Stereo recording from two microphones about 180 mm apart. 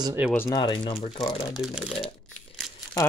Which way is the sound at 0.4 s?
20° left (ahead or behind).